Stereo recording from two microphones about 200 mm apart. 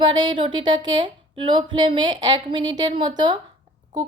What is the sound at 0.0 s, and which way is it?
A woman's voice, 25° right (ahead or behind).